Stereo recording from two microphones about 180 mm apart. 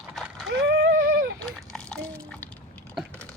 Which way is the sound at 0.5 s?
65° right (ahead or behind).